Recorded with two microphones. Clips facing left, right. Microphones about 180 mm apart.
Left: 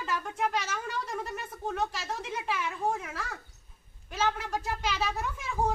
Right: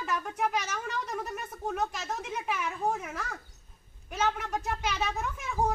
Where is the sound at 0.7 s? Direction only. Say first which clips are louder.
Even; centre (ahead or behind).